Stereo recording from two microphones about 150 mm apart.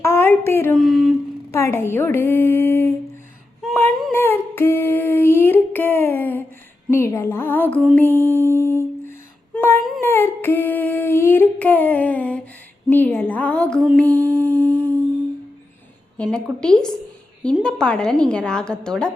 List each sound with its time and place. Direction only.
0.0 s speech: 15° left (ahead or behind)
0.8 s a woman's voice: centre (ahead or behind)
1.5 s a woman's voice: 15° left (ahead or behind)
4.1 s humming: 15° left (ahead or behind)
6.9 s a woman's voice: 20° left (ahead or behind)
7.9 s mantra: 15° left (ahead or behind)
9.6 s a sound: 15° left (ahead or behind)
10.0 s female singing: 15° left (ahead or behind)
12.9 s a woman's voice: 10° left (ahead or behind)
14.0 s a sound: 10° left (ahead or behind)
16.3 s a woman's voice: 5° left (ahead or behind)